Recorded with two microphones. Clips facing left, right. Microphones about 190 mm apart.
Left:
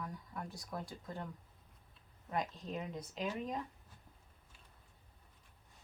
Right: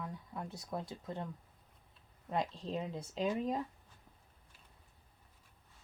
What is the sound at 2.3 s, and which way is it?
Speech, 25° right (ahead or behind).